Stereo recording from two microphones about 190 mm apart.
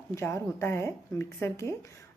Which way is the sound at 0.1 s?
15° left (ahead or behind).